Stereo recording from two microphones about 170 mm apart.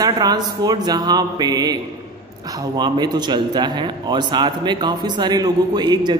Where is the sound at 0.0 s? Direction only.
20° right (ahead or behind).